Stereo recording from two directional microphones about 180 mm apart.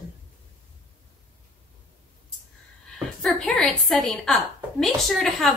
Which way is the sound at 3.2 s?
5° left (ahead or behind).